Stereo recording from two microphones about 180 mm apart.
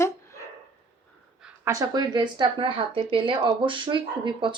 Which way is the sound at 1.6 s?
20° right (ahead or behind).